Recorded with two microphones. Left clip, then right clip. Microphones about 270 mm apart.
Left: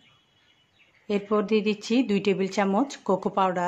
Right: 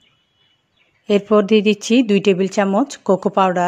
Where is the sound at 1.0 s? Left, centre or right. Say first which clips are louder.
Right 11 dB; right.